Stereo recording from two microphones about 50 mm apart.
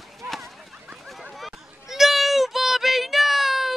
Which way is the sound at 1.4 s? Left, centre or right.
Centre.